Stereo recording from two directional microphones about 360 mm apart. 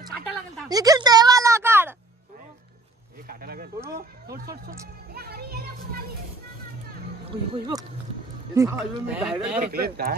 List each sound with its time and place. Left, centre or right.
0.7 s a sound: centre
3.3 s a child's voice: right
7.2 s speech: centre
9.6 s a child's voice: right